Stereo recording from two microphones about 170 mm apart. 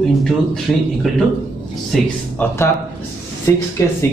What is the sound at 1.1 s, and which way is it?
A man's voice, centre (ahead or behind).